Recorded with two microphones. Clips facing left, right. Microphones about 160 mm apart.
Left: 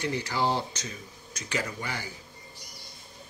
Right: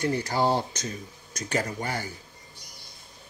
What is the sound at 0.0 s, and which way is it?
Speech, 45° right (ahead or behind).